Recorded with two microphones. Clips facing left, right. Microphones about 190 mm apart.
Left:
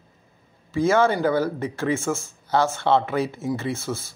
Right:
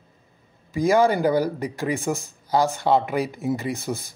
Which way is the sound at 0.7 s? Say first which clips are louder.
Right 1 dB; 15° right (ahead or behind).